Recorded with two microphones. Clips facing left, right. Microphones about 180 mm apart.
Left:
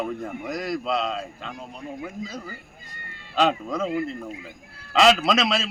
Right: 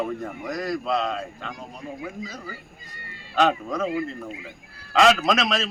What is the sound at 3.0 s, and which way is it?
Meow, 50° left (ahead or behind).